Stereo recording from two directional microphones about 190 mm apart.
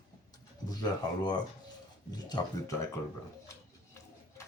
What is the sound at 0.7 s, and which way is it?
Speech, 20° left (ahead or behind).